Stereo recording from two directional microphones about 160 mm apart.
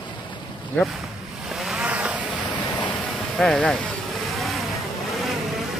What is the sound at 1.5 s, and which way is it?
Vehicle, 5° right (ahead or behind).